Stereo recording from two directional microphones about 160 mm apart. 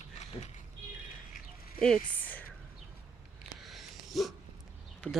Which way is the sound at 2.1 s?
10° left (ahead or behind).